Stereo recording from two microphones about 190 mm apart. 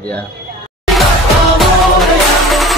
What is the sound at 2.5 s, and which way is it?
Music, centre (ahead or behind).